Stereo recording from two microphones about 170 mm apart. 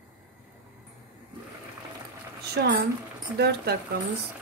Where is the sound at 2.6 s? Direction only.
75° right (ahead or behind).